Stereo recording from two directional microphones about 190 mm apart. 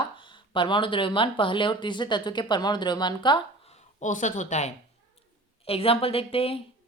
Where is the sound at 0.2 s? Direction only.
25° left (ahead or behind).